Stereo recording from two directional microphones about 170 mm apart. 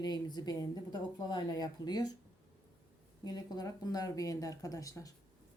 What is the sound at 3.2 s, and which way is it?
Speech, 25° left (ahead or behind).